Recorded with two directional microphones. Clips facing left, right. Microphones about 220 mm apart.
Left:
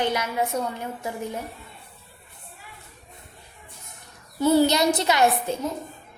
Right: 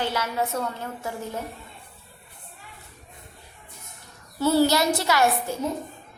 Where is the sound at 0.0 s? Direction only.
15° left (ahead or behind).